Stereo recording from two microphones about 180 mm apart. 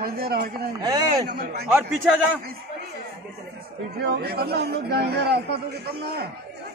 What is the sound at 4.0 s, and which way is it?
A man's voice, 65° right (ahead or behind).